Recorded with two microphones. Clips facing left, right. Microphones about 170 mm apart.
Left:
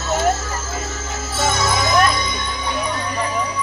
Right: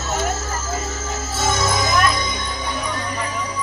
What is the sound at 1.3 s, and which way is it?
Music, 45° right (ahead or behind).